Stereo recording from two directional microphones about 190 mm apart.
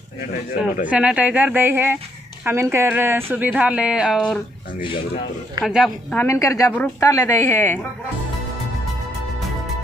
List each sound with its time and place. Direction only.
0.8 s speech: 5° right (ahead or behind)
5.6 s a woman's voice: 5° right (ahead or behind)
6.1 s a woman's voice: 15° left (ahead or behind)